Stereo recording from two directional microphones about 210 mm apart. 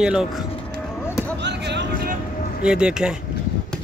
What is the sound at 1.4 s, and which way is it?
Music, 55° right (ahead or behind).